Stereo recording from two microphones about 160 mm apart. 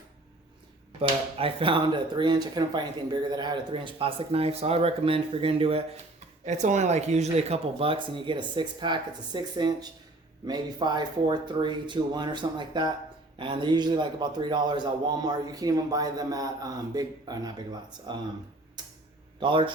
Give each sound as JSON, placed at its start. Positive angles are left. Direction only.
{"t": 0.9, "sound": "speech", "side_deg": -35}
{"t": 6.4, "sound": "a man's voice", "side_deg": -45}
{"t": 19.4, "sound": "speech", "side_deg": -30}